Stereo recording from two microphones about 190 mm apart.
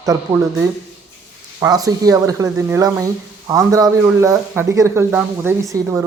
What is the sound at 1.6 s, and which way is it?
A man's voice, 20° right (ahead or behind).